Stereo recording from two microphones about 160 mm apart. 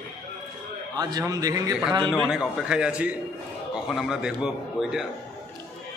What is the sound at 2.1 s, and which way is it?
A man's voice, 5° right (ahead or behind).